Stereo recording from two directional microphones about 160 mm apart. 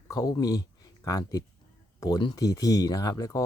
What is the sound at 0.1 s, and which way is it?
Speech, 20° left (ahead or behind).